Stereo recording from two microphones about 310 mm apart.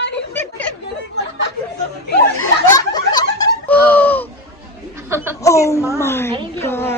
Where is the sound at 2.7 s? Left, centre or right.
Centre.